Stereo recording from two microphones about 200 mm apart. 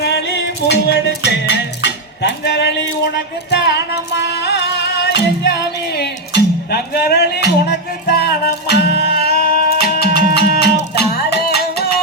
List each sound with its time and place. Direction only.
0.0 s music: 60° left (ahead or behind)